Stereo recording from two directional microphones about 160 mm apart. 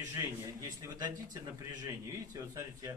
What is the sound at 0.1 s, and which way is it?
A man's voice, 20° right (ahead or behind).